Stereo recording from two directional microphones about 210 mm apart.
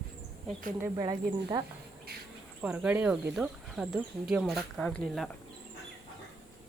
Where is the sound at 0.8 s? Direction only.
20° right (ahead or behind).